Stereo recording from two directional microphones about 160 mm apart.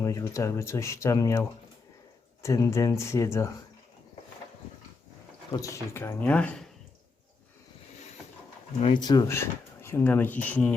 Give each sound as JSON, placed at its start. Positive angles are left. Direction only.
{"t": 0.0, "sound": "speech", "side_deg": 20}
{"t": 5.5, "sound": "speech", "side_deg": 20}
{"t": 9.0, "sound": "speech", "side_deg": 25}